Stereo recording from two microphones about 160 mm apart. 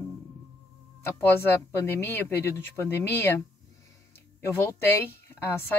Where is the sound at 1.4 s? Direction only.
15° left (ahead or behind).